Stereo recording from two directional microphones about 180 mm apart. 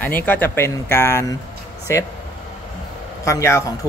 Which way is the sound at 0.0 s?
10° left (ahead or behind).